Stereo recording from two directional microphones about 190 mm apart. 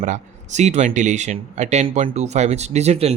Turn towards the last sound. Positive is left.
turn(degrees=-35)  # may be behind; listen again after turning